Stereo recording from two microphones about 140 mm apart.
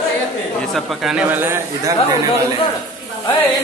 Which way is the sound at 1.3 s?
15° right (ahead or behind).